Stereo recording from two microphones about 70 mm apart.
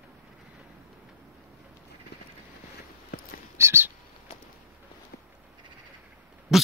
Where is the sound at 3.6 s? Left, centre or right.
Right.